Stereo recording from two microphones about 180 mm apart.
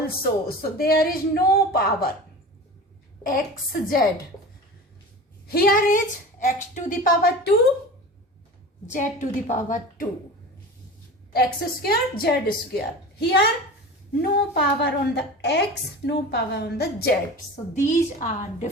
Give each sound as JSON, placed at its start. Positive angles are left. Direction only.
{"t": 0.2, "sound": "a woman's voice", "side_deg": 55}
{"t": 3.2, "sound": "a woman's voice", "side_deg": 50}
{"t": 5.5, "sound": "a woman's voice", "side_deg": 55}
{"t": 9.5, "sound": "a woman's voice", "side_deg": 45}
{"t": 11.3, "sound": "a woman's voice", "side_deg": 60}
{"t": 17.8, "sound": "a woman's voice", "side_deg": 45}